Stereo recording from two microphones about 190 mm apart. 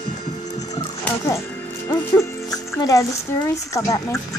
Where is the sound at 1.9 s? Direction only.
20° left (ahead or behind).